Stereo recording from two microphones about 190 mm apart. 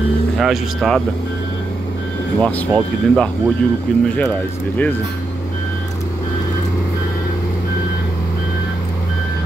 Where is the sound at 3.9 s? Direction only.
5° left (ahead or behind).